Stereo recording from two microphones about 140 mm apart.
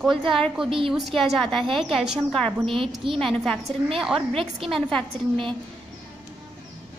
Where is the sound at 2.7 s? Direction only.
40° right (ahead or behind).